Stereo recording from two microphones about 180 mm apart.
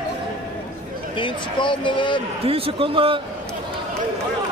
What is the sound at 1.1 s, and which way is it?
Speech, 25° left (ahead or behind).